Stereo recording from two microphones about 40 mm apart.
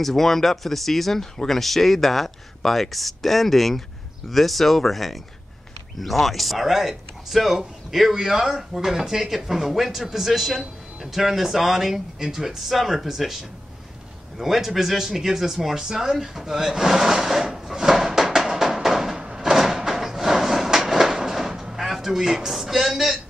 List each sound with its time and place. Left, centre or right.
0.0 s speech: centre
14.4 s speech: centre
19.1 s a sound: centre
19.5 s train: centre
22.5 s speech: centre